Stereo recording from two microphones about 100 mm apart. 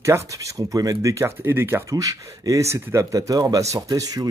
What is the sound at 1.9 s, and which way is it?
Speech, 35° right (ahead or behind).